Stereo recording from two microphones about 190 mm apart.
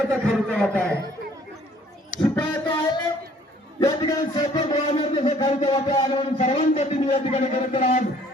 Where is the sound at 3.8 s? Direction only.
20° left (ahead or behind).